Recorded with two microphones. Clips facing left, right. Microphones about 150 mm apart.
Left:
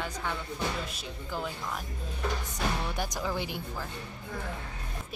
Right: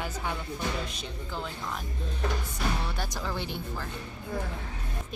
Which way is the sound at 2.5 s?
15° left (ahead or behind).